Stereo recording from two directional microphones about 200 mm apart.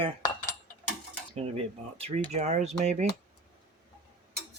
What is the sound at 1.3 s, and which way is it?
Speech, 30° right (ahead or behind).